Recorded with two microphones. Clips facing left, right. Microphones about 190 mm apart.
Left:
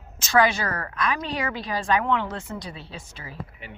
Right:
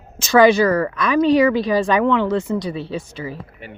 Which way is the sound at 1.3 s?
85° right.